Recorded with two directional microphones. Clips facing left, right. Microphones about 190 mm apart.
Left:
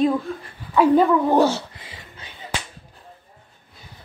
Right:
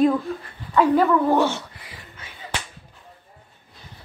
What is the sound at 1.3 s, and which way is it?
Dog, 40° left (ahead or behind).